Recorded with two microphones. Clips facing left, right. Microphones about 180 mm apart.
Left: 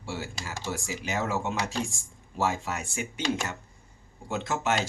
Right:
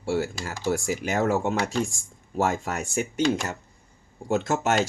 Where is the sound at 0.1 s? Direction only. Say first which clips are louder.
Right 9 dB; 45° right (ahead or behind).